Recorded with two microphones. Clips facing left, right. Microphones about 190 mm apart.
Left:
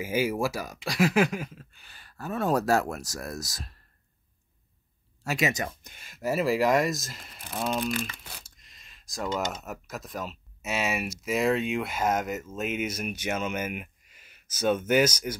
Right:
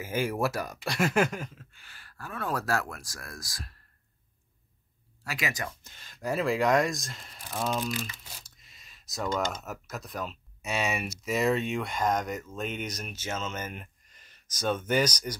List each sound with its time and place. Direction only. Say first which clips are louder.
0.0 s speech: left 2 dB; 10° left (ahead or behind)
1.5 s speech: left 3 dB; 15° left (ahead or behind)
5.2 s speech: left 6 dB; 25° left (ahead or behind); by 7.7 s 5° left (ahead or behind)
7.8 s speech: left 3 dB; 60° left (ahead or behind)
8.5 s a sound: even; centre (ahead or behind)
9.4 s speech: even; centre (ahead or behind)